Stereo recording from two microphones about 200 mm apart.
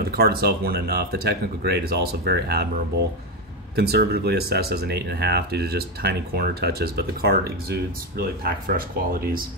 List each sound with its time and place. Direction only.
0.1 s speech: 50° right (ahead or behind)